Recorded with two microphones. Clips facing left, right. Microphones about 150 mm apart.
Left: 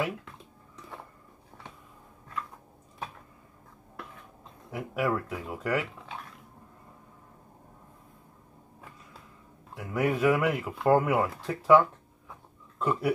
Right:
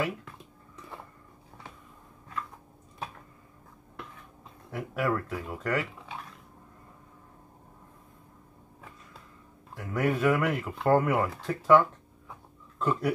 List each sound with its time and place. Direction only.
4.6 s speech: 5° left (ahead or behind)
9.8 s speech: 5° left (ahead or behind)